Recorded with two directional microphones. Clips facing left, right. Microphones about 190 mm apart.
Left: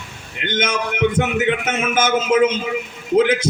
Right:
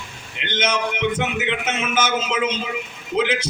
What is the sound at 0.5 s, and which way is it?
A man's voice, 50° left (ahead or behind).